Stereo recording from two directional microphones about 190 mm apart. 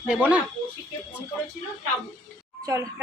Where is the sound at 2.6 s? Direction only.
15° right (ahead or behind).